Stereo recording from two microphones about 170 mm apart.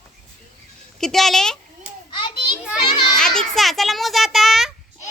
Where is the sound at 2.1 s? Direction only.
30° left (ahead or behind).